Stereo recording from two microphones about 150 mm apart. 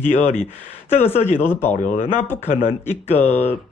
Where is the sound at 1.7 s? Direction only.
45° left (ahead or behind).